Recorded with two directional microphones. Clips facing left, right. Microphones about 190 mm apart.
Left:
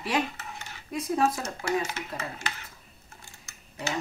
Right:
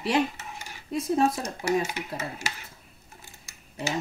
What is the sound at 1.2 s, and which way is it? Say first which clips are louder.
Speech: even; 30° right (ahead or behind).